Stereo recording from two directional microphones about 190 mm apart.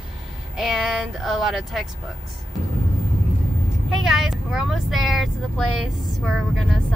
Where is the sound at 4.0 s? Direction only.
Centre (ahead or behind).